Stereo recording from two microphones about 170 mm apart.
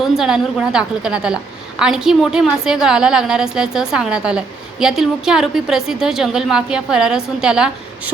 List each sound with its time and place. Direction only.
0.0 s a woman's voice: centre (ahead or behind)